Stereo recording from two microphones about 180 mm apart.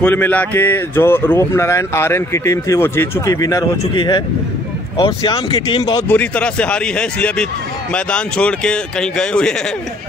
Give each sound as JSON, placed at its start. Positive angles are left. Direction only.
{"t": 0.0, "sound": "speech", "side_deg": 10}
{"t": 6.0, "sound": "speech", "side_deg": 10}